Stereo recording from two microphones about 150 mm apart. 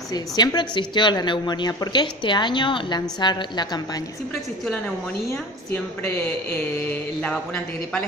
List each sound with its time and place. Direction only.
0.1 s a woman's voice: 25° left (ahead or behind)
7.2 s a man's voice: 10° left (ahead or behind)